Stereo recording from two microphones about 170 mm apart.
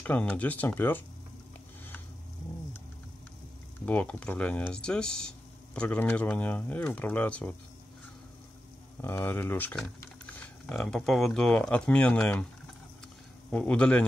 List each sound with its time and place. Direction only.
0.0 s speech: 10° left (ahead or behind)
3.8 s speech: 10° left (ahead or behind)
9.0 s speech: 10° left (ahead or behind)
13.5 s speech: 5° left (ahead or behind)